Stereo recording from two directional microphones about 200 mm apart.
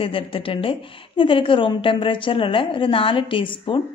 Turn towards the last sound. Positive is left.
turn(degrees=25)  # may be behind; listen again after turning